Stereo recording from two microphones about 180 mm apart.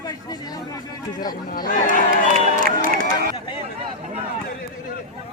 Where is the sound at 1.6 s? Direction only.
50° left (ahead or behind).